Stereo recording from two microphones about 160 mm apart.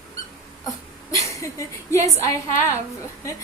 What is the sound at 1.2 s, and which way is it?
A woman's voice, 20° left (ahead or behind).